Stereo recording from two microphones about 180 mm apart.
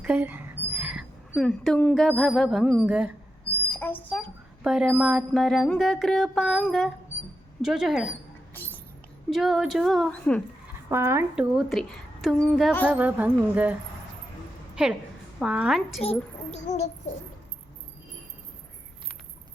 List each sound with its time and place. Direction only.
0.0 s speech: 10° right (ahead or behind)
3.7 s a sound: 10° left (ahead or behind)
4.6 s mantra: 5° right (ahead or behind)
8.6 s music: 10° left (ahead or behind)
9.3 s mantra: centre (ahead or behind)
10.8 s mantra: 15° right (ahead or behind)
12.8 s speech: 10° right (ahead or behind)
14.8 s mantra: 5° right (ahead or behind)
16.0 s a child's voice: 40° left (ahead or behind)